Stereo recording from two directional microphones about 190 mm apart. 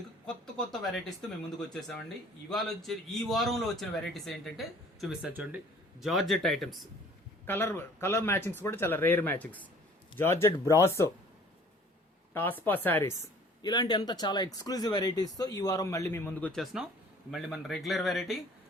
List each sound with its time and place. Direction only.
0.3 s speech: 5° left (ahead or behind)
2.5 s a man's voice: centre (ahead or behind)
12.3 s a man's voice: 10° left (ahead or behind)